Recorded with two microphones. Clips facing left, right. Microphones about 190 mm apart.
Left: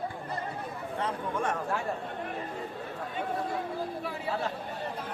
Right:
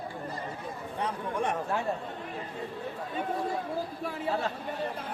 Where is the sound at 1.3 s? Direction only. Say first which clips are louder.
Right 2 dB; 15° right (ahead or behind).